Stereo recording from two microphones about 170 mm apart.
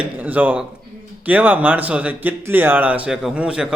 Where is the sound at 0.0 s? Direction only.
10° right (ahead or behind).